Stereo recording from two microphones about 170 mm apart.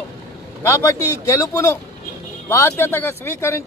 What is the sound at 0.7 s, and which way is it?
A man's voice, 15° left (ahead or behind).